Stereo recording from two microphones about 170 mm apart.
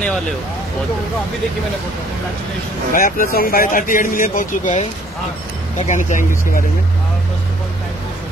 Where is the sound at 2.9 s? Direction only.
55° left (ahead or behind).